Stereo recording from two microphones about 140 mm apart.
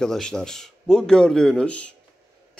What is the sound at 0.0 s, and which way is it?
A man's voice, 5° left (ahead or behind).